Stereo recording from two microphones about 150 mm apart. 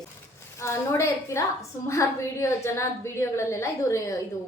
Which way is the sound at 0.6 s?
20° left (ahead or behind).